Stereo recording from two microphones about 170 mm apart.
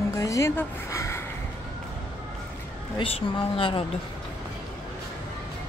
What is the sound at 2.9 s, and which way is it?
Speech, 30° left (ahead or behind).